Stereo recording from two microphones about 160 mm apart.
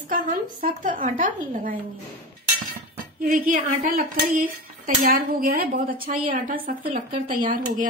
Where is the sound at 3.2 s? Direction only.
60° right (ahead or behind).